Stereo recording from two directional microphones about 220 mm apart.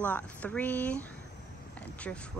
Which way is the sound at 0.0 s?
5° left (ahead or behind).